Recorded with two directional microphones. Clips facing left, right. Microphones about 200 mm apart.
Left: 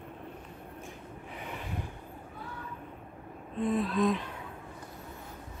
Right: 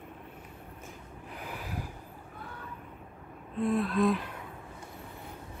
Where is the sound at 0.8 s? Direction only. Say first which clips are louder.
Left 2 dB; centre (ahead or behind).